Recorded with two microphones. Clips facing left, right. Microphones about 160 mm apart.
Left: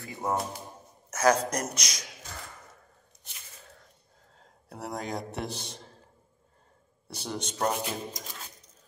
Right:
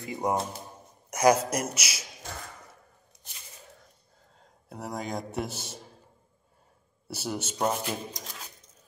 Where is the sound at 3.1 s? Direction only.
65° right (ahead or behind).